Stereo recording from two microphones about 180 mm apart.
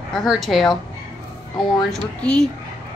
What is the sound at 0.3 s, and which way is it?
Speech, centre (ahead or behind).